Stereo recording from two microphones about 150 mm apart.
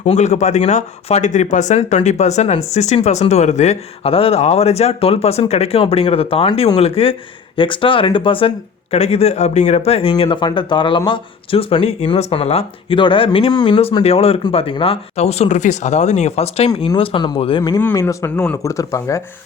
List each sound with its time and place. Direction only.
0.0 s speech: 50° left (ahead or behind)
17.6 s speech: 20° left (ahead or behind)